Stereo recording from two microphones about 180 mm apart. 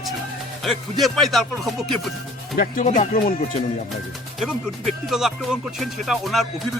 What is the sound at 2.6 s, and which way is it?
Speech, 50° left (ahead or behind).